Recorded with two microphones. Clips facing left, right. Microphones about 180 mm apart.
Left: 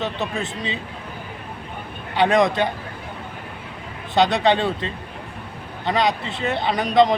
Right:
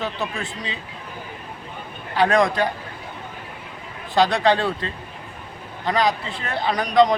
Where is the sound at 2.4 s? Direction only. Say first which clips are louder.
Left 1 dB; centre (ahead or behind).